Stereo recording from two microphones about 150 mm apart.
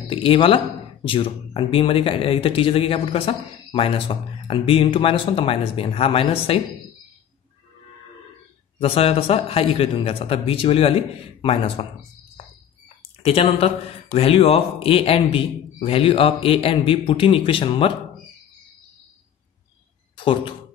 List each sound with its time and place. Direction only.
0.1 s speech: 35° left (ahead or behind)
8.8 s speech: 40° left (ahead or behind)
12.8 s a sound: 40° left (ahead or behind)
14.1 s speech: 40° left (ahead or behind)